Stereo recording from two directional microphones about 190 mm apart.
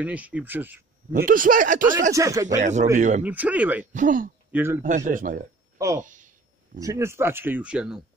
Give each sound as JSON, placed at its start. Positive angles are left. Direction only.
{"t": 0.0, "sound": "speech", "side_deg": -5}
{"t": 1.1, "sound": "speech", "side_deg": -45}
{"t": 2.1, "sound": "speech", "side_deg": -15}
{"t": 2.5, "sound": "speech", "side_deg": -40}
{"t": 3.3, "sound": "speech", "side_deg": -10}
{"t": 3.9, "sound": "speech", "side_deg": -45}
{"t": 4.5, "sound": "a man's voice", "side_deg": -10}
{"t": 4.8, "sound": "speech", "side_deg": -40}
{"t": 5.9, "sound": "a sound", "side_deg": -40}
{"t": 6.8, "sound": "speech", "side_deg": -15}